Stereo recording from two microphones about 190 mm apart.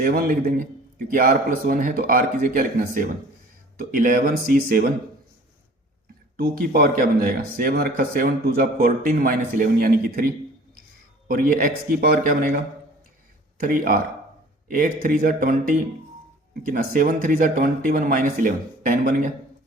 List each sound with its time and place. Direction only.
0.0 s speech: 50° right (ahead or behind)
6.3 s speech: 50° right (ahead or behind)